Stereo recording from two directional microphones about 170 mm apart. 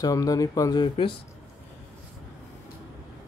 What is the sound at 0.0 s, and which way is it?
Speech, 20° left (ahead or behind).